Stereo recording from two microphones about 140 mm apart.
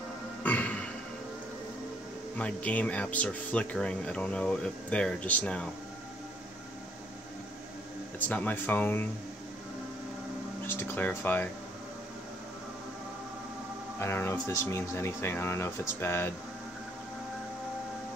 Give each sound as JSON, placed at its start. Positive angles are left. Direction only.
{"t": 0.4, "sound": "music", "side_deg": 10}
{"t": 2.3, "sound": "speech", "side_deg": 10}
{"t": 8.3, "sound": "speech", "side_deg": 10}
{"t": 10.7, "sound": "speech", "side_deg": 15}
{"t": 13.9, "sound": "speech", "side_deg": 20}